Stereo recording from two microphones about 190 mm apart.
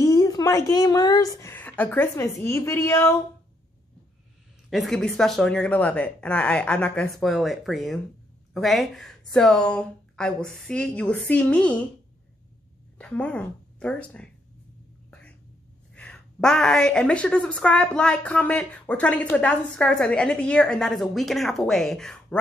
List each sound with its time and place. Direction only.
0.0 s a woman's voice: 20° left (ahead or behind)
4.6 s a woman's voice: centre (ahead or behind)
12.9 s a woman's voice: 5° left (ahead or behind)
15.0 s a sound: 5° left (ahead or behind)
15.9 s a woman's voice: 5° left (ahead or behind)